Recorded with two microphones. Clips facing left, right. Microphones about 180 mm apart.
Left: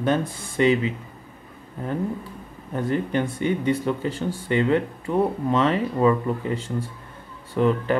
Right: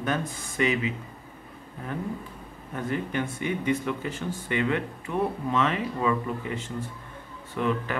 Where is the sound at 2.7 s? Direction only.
35° left (ahead or behind).